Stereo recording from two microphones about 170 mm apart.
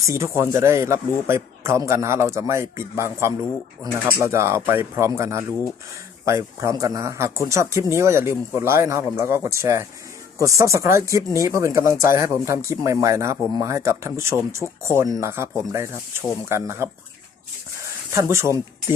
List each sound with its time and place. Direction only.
0.0 s speech: 15° right (ahead or behind)
18.1 s speech: 15° right (ahead or behind)